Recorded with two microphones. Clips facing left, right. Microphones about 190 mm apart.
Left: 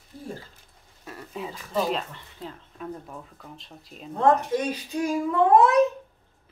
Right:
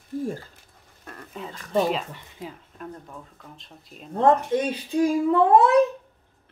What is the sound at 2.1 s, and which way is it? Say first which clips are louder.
Speech: right 1 dB; 15° right (ahead or behind).